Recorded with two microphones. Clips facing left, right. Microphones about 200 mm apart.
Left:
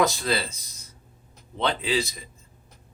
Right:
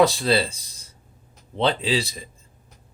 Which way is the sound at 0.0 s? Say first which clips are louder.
Right 5 dB; 30° right (ahead or behind).